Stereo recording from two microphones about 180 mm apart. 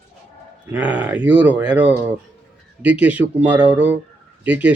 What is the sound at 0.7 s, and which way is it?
A man's voice, 10° right (ahead or behind).